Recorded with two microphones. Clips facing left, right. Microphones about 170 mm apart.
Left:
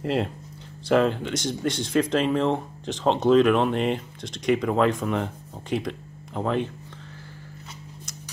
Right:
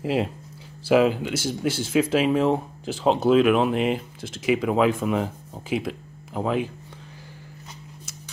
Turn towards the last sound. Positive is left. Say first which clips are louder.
# right 1 dB
turn(degrees=-5)  # may be behind; listen again after turning